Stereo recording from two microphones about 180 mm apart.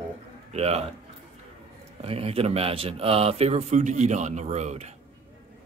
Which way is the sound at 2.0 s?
35° right (ahead or behind).